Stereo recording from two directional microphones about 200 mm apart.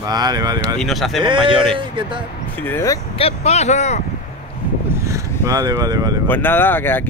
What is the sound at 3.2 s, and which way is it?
Speech, 30° left (ahead or behind).